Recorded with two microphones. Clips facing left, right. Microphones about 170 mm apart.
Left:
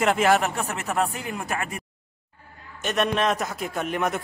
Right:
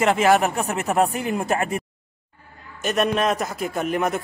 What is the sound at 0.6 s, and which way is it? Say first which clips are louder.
Speech: right 5 dB; 20° right (ahead or behind).